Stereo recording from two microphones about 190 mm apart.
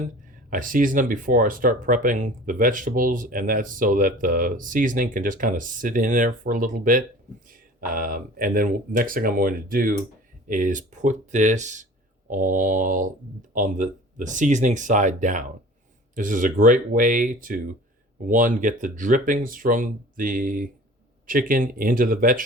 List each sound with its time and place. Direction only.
0.5 s speech: 45° right (ahead or behind)